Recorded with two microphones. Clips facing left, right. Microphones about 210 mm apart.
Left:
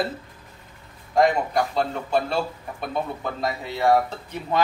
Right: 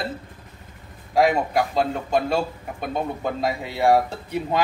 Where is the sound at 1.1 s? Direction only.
10° right (ahead or behind).